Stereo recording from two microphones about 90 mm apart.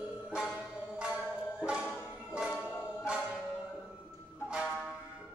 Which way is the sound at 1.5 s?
10° right (ahead or behind).